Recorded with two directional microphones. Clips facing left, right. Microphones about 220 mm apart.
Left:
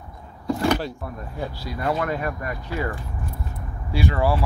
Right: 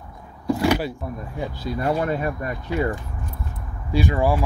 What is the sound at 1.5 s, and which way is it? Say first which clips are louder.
Speech: right 3 dB; 25° right (ahead or behind).